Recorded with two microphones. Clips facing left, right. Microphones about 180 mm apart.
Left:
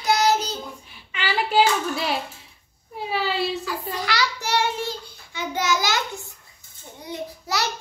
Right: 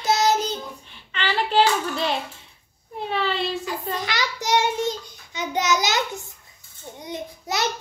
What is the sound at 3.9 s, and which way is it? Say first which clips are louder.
Child singing: left 4 dB; 20° right (ahead or behind).